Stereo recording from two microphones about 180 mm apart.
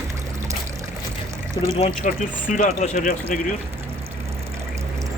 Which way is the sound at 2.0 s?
45° left (ahead or behind).